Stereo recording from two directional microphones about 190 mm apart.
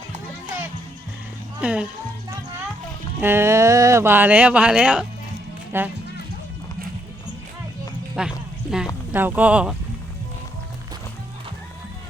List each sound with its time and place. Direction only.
1.6 s speech: 5° right (ahead or behind)
3.2 s speech: 10° right (ahead or behind)
8.1 s a sound: 5° right (ahead or behind)
9.1 s speech: 10° right (ahead or behind)